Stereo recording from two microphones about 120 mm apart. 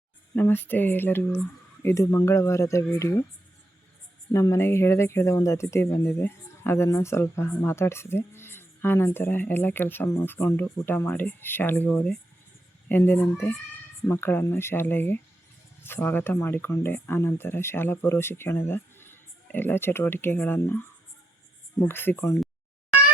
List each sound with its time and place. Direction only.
0.3 s speech: 15° left (ahead or behind)
4.3 s speech: 25° left (ahead or behind)
21.8 s speech: 15° left (ahead or behind)